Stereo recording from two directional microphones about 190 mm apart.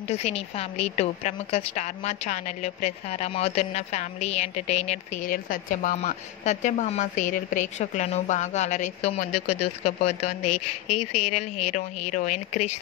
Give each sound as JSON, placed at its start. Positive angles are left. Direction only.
{"t": 0.1, "sound": "a woman's voice", "side_deg": 35}